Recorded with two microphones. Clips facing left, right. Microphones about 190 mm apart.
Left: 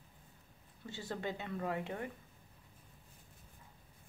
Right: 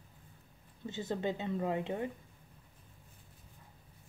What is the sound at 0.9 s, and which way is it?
A woman's voice, 20° right (ahead or behind).